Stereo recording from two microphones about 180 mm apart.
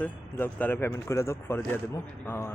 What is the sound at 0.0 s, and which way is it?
Speech, 10° left (ahead or behind).